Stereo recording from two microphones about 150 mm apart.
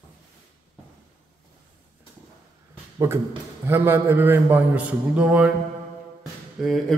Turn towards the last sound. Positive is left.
turn(degrees=0)  # may be behind; listen again after turning